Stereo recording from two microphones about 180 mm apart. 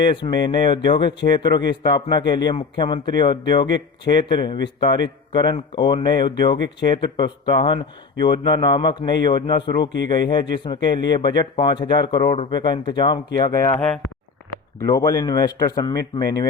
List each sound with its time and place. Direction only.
0.0 s speech: 25° left (ahead or behind)
12.2 s speech: 35° left (ahead or behind)
12.5 s speech: 25° left (ahead or behind)
14.8 s speech: 20° left (ahead or behind)